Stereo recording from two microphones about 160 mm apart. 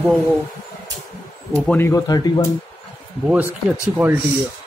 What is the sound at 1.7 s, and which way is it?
Speech, 15° left (ahead or behind).